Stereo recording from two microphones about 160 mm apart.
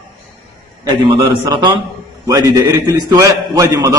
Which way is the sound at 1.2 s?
25° right (ahead or behind).